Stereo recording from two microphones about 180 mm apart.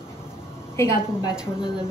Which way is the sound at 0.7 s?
15° left (ahead or behind).